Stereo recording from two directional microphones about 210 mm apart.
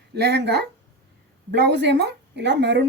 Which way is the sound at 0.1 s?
50° right (ahead or behind).